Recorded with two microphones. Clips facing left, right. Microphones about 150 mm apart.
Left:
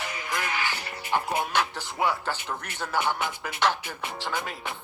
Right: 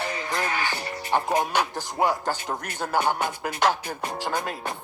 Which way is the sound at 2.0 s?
40° right (ahead or behind).